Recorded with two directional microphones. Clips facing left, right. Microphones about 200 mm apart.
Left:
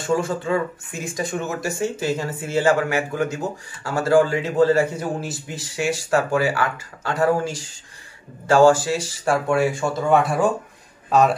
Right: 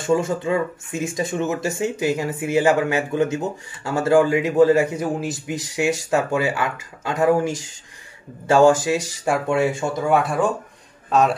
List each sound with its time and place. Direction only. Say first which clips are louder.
0.0 s speech: right 2 dB; 20° right (ahead or behind)
10.0 s a man's voice: left 1 dB; centre (ahead or behind)